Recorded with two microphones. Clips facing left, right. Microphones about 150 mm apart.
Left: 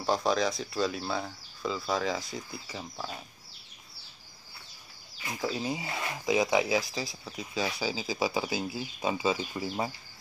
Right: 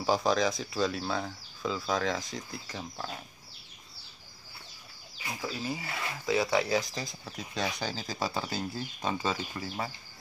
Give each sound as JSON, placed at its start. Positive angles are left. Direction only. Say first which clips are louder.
{"t": 0.0, "sound": "speech", "louder": "right 1 dB", "side_deg": 0}
{"t": 5.4, "sound": "speech", "louder": "left 4 dB", "side_deg": 20}